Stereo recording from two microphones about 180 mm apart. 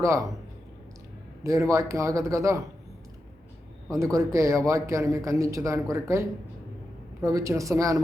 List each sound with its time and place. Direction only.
0.0 s a man's voice: 15° right (ahead or behind)
1.5 s a man's voice: 15° right (ahead or behind)
3.9 s a man's voice: 15° right (ahead or behind)